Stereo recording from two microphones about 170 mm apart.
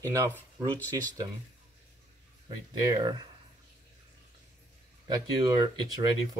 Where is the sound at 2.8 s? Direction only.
25° right (ahead or behind).